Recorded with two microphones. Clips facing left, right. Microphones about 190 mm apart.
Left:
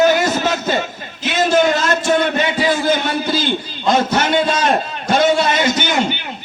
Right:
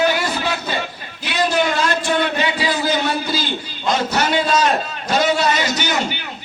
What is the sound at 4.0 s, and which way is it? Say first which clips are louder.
Speech: left 3 dB; 50° left (ahead or behind).